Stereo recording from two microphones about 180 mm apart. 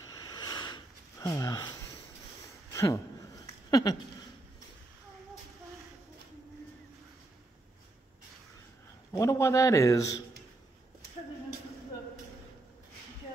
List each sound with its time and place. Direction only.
0.0 s sniff: 20° left (ahead or behind)
2.7 s a sound: 15° left (ahead or behind)
9.1 s a man's voice: 15° left (ahead or behind)